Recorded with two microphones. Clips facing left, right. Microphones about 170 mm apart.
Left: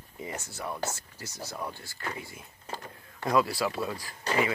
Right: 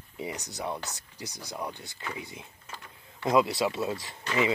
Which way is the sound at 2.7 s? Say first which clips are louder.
Left 9 dB; 45° left (ahead or behind).